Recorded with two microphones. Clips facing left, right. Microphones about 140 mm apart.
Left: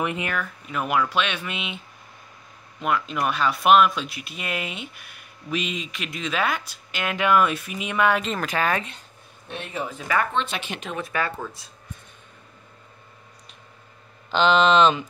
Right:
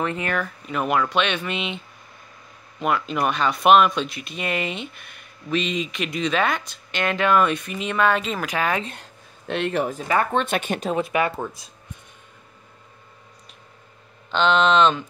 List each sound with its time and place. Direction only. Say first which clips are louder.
0.0 s speech: right 1 dB; 15° left (ahead or behind)
0.3 s speech: right 3 dB; centre (ahead or behind)
2.8 s speech: right 2 dB; centre (ahead or behind)
8.2 s speech: even; centre (ahead or behind)
8.5 s speech: even; 15° right (ahead or behind)
8.9 s a sound: right 4 dB; 90° right
10.3 s speech: right 5 dB; 50° right (ahead or behind)
11.0 s speech: right 3 dB; 20° right (ahead or behind)
14.3 s speech: even; centre (ahead or behind)